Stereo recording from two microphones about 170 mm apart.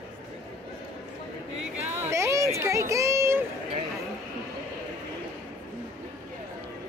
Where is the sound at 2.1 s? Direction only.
15° right (ahead or behind).